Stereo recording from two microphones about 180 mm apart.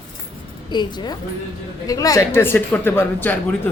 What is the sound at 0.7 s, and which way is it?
A woman's voice, 25° left (ahead or behind).